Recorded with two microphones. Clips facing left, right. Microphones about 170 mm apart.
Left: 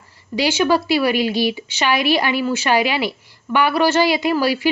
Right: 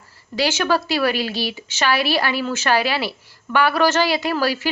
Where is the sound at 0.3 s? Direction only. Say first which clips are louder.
Left 3 dB; 10° left (ahead or behind).